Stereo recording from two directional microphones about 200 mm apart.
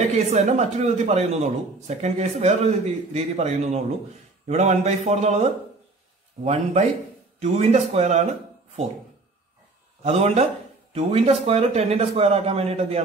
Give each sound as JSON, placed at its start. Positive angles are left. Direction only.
{"t": 0.1, "sound": "a man's voice", "side_deg": -35}
{"t": 10.0, "sound": "a man's voice", "side_deg": -30}